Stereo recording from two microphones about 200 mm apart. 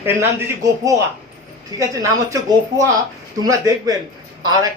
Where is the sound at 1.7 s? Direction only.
15° right (ahead or behind).